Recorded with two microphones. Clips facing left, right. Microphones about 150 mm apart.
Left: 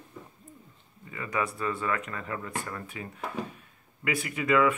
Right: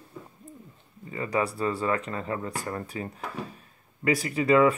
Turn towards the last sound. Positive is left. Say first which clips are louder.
# right 4 dB
turn(degrees=-35)  # may be behind; listen again after turning